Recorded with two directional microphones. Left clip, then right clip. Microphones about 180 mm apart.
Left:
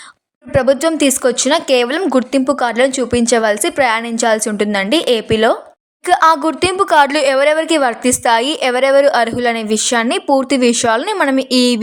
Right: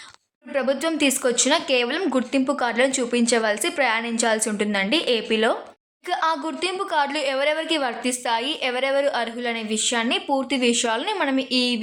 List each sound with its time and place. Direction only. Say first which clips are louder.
0.5 s a woman's voice: left 10 dB; 40° left (ahead or behind)
6.1 s a woman's voice: left 12 dB; 50° left (ahead or behind)